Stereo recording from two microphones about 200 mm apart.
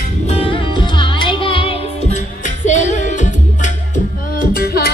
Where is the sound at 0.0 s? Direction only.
30° left (ahead or behind).